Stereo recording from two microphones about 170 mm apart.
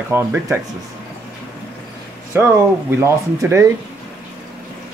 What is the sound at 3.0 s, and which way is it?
Speech, 15° right (ahead or behind).